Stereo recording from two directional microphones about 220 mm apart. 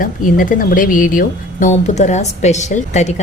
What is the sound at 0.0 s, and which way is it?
Speech, 40° left (ahead or behind).